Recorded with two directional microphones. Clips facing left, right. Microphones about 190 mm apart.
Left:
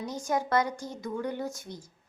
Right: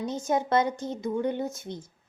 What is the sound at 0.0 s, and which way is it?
A woman's voice, 25° right (ahead or behind).